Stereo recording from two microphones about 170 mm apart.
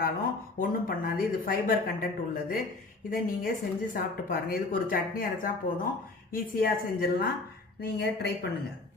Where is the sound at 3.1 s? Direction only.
55° left (ahead or behind).